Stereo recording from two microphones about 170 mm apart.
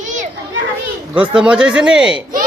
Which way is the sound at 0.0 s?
45° right (ahead or behind).